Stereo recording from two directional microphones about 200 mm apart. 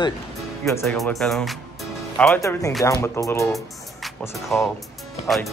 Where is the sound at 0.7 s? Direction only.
15° left (ahead or behind).